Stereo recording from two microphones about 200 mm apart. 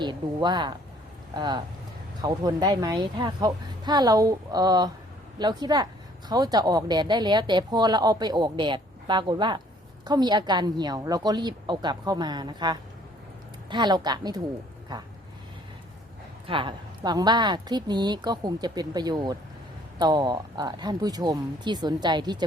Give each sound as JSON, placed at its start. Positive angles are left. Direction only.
{"t": 0.0, "sound": "speech", "side_deg": -20}
{"t": 16.5, "sound": "speech", "side_deg": -25}